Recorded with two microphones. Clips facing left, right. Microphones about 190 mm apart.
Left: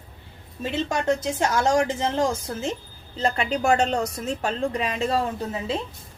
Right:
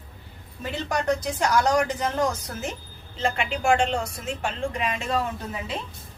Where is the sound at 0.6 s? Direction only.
25° left (ahead or behind).